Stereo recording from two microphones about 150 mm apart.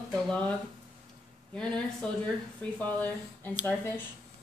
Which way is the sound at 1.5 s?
5° left (ahead or behind).